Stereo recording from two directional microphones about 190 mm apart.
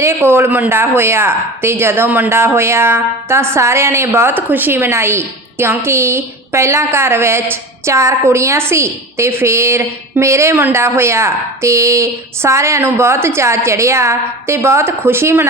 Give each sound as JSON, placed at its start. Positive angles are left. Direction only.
{"t": 0.0, "sound": "speech", "side_deg": -15}